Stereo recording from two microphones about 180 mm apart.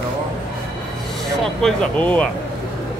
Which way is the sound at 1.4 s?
5° left (ahead or behind).